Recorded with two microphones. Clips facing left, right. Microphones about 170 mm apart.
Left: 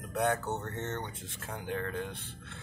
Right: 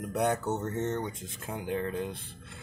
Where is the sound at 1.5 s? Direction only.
15° right (ahead or behind).